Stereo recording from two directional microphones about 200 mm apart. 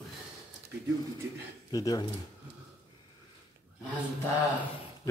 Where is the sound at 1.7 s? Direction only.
20° left (ahead or behind).